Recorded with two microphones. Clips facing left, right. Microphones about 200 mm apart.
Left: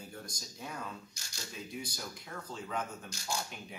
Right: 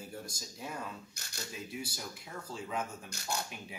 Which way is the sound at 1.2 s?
60° right (ahead or behind).